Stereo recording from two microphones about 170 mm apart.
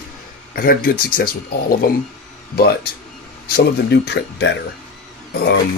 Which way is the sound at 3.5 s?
70° left (ahead or behind).